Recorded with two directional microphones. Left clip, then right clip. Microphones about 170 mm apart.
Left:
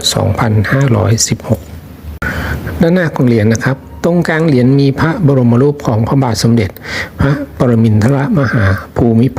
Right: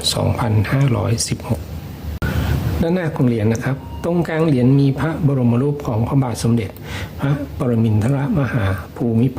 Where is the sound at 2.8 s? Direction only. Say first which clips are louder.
Left 8 dB; 30° left (ahead or behind).